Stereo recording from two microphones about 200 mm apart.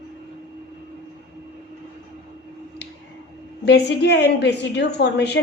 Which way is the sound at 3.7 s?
60° left (ahead or behind).